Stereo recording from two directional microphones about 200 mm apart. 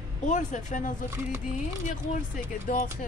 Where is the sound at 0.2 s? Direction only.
40° left (ahead or behind).